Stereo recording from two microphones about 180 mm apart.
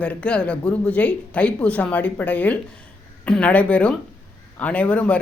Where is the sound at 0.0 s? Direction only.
5° left (ahead or behind).